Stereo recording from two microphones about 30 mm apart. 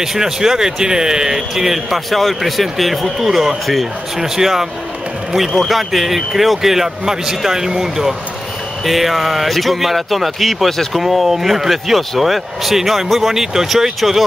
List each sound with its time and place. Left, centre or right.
0.0 s speech: centre
1.5 s speech: centre
3.2 s speech: centre
5.5 s speech: centre